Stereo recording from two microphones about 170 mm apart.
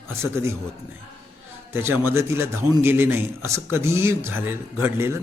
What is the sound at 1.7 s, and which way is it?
A man's voice, 15° right (ahead or behind).